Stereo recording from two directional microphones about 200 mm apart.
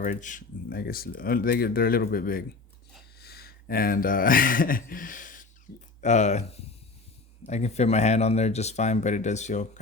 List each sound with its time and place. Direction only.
0.0 s speech: 40° left (ahead or behind)